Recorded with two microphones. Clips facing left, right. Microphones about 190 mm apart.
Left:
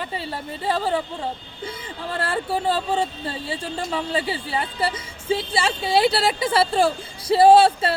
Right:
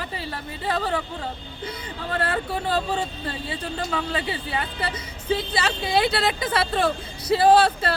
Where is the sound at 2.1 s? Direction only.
30° left (ahead or behind).